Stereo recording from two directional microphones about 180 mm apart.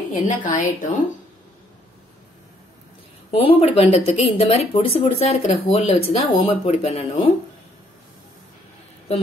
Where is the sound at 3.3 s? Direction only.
30° left (ahead or behind).